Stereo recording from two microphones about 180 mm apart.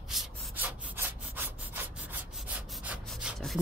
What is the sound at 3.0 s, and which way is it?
Rub, centre (ahead or behind).